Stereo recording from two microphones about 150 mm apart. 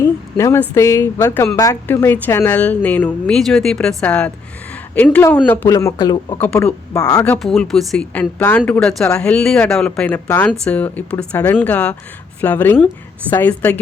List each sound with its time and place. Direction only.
0.0 s speech: 20° left (ahead or behind)
5.5 s speech: 20° left (ahead or behind)
7.3 s speech: centre (ahead or behind)